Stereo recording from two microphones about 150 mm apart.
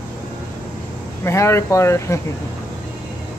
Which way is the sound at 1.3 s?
20° left (ahead or behind).